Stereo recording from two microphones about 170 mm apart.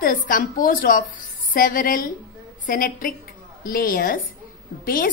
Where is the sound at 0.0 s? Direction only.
55° left (ahead or behind).